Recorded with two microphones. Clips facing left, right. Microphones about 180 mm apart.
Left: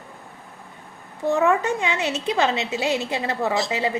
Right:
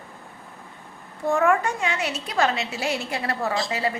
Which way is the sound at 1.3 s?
20° left (ahead or behind).